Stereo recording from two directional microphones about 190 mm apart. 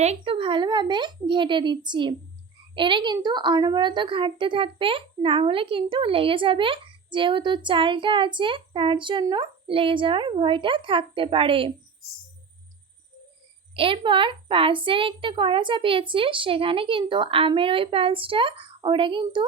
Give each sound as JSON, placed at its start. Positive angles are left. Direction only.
{"t": 0.0, "sound": "a woman's voice", "side_deg": -30}
{"t": 13.7, "sound": "a woman's voice", "side_deg": -30}